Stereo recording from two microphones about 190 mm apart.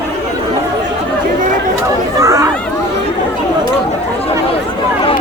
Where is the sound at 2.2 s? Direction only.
15° right (ahead or behind).